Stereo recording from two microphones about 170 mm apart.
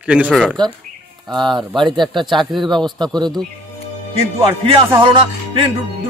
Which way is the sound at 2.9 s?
25° right (ahead or behind).